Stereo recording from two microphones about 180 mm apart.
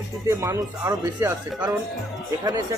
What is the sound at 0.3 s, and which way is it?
Speech, 15° right (ahead or behind).